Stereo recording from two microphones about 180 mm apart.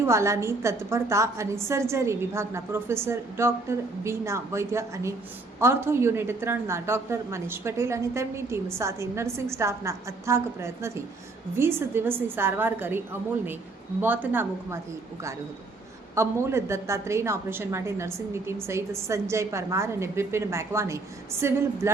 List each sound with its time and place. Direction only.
0.0 s a woman's voice: 15° right (ahead or behind)
14.0 s a woman's voice: 10° right (ahead or behind)
16.1 s a woman's voice: 15° right (ahead or behind)